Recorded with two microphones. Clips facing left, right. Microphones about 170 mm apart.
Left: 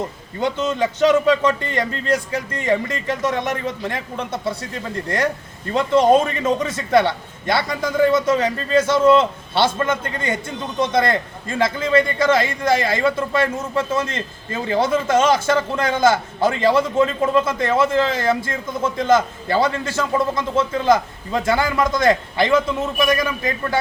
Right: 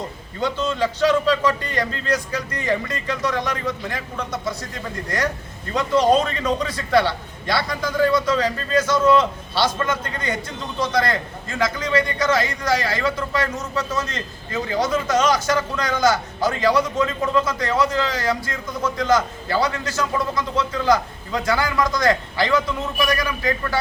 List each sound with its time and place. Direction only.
0.3 s a man's voice: 20° left (ahead or behind)
5.0 s a man's voice: 25° left (ahead or behind)